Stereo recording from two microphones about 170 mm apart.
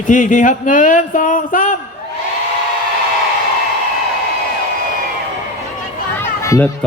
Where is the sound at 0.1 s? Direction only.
50° left (ahead or behind).